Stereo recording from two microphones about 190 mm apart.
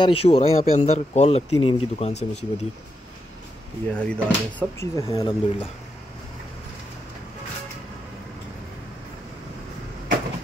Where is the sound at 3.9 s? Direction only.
5° left (ahead or behind).